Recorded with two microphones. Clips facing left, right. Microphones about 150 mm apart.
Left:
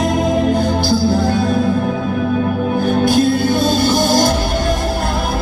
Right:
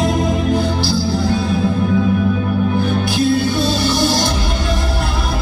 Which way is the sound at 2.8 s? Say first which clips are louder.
Left 4 dB; 50° left (ahead or behind).